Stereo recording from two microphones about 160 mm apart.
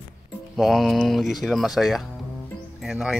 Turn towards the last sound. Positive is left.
turn(degrees=-5)  # may be behind; listen again after turning